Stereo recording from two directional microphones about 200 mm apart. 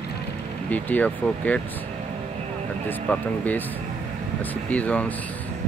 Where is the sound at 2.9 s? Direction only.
10° left (ahead or behind).